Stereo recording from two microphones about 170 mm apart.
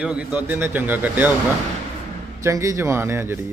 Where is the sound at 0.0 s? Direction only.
5° right (ahead or behind).